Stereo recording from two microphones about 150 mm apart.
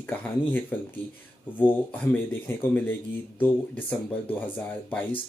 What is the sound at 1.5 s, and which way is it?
Speech, 15° left (ahead or behind).